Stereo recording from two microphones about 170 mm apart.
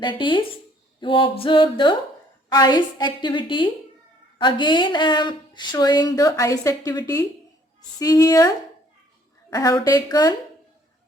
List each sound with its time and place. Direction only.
0.0 s speech: 30° left (ahead or behind)